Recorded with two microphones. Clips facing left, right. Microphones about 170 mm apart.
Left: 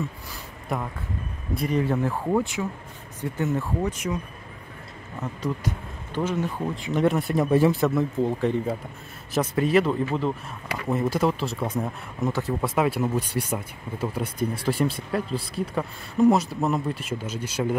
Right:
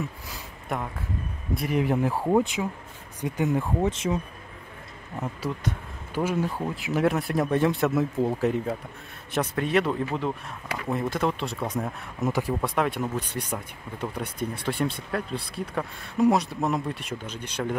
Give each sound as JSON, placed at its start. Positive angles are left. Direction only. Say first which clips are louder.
{"t": 0.7, "sound": "speech", "louder": "left 1 dB", "side_deg": 0}
{"t": 1.8, "sound": "speech", "louder": "right 2 dB", "side_deg": -15}
{"t": 3.9, "sound": "speech", "louder": "right 2 dB", "side_deg": -25}
{"t": 6.1, "sound": "speech", "louder": "even", "side_deg": -10}
{"t": 12.3, "sound": "speech", "louder": "right 1 dB", "side_deg": -15}
{"t": 12.6, "sound": "speech", "louder": "left 3 dB", "side_deg": 5}